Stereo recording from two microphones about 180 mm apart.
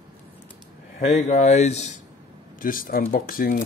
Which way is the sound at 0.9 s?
50° left (ahead or behind).